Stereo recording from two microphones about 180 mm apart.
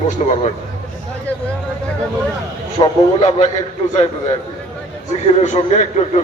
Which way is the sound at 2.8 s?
30° left (ahead or behind).